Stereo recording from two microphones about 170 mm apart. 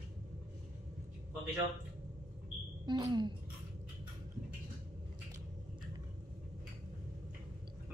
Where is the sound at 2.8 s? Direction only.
25° right (ahead or behind).